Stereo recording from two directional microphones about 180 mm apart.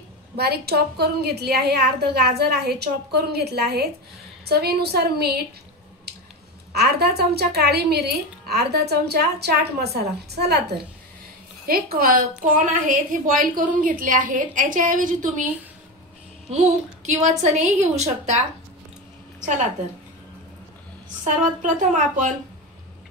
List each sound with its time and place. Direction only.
0.4 s a woman's voice: 60° right (ahead or behind)
6.7 s a woman's voice: 65° right (ahead or behind); by 15.4 s 45° right (ahead or behind)
16.4 s a woman's voice: 40° right (ahead or behind)
19.4 s a woman's voice: 40° right (ahead or behind)
21.5 s a woman's voice: 45° right (ahead or behind)